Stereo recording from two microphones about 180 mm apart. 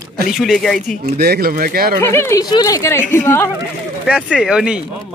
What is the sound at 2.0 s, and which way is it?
Speech, 15° left (ahead or behind).